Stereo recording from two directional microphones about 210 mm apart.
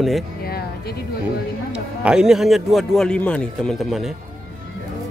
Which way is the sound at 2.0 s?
5° right (ahead or behind).